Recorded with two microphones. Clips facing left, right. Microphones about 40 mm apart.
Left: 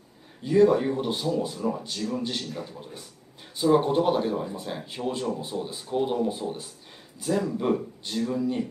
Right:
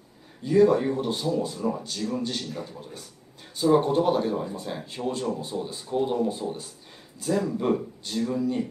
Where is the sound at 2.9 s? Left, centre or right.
Centre.